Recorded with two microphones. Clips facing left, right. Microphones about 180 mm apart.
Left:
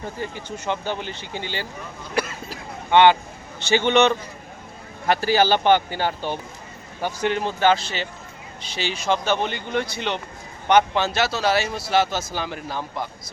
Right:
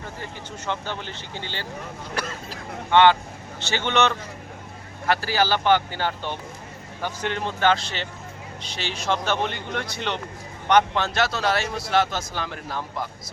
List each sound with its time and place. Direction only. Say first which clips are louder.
0.2 s speech: left 5 dB; 15° left (ahead or behind)